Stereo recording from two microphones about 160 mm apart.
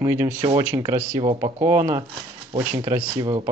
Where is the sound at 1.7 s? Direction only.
20° right (ahead or behind).